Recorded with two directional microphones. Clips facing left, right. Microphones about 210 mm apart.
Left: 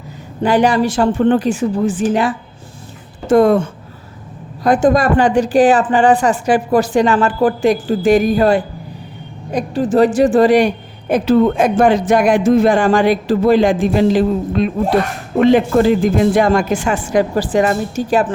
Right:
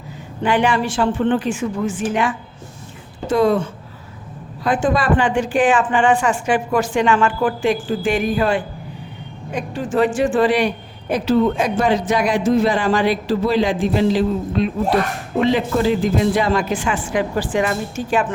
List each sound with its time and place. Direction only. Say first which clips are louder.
0.4 s a woman's voice: left 5 dB; 40° left (ahead or behind)
3.2 s a man's voice: left 5 dB; 50° left (ahead or behind)